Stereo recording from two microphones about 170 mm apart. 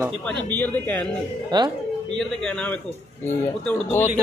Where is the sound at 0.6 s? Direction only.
10° left (ahead or behind).